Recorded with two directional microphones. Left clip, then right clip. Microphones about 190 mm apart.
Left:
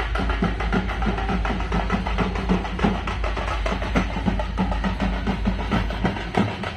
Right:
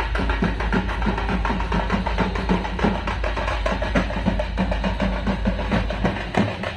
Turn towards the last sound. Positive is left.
turn(degrees=-40)  # may be behind; listen again after turning